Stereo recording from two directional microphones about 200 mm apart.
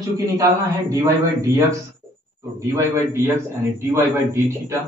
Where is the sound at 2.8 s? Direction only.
15° right (ahead or behind).